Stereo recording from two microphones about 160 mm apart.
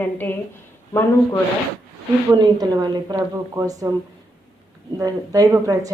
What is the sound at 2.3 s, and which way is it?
A woman's voice, 25° right (ahead or behind).